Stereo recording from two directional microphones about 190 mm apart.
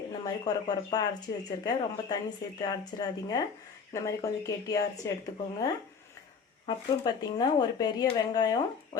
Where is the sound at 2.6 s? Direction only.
20° left (ahead or behind).